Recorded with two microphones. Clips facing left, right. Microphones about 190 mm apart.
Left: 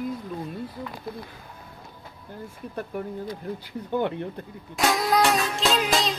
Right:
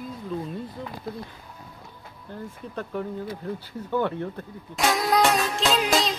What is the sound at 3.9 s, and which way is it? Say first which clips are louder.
Speech: even; 20° left (ahead or behind).